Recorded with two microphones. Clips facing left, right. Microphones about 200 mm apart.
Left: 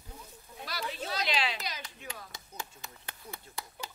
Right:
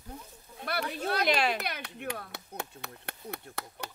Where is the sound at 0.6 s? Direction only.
60° right (ahead or behind).